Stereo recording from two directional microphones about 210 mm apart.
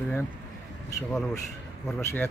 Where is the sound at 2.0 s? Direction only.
10° left (ahead or behind).